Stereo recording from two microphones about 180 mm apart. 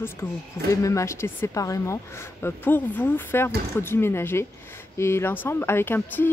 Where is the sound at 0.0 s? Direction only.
15° left (ahead or behind).